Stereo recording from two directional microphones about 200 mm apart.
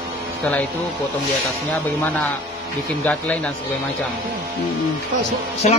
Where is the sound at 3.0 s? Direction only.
5° left (ahead or behind).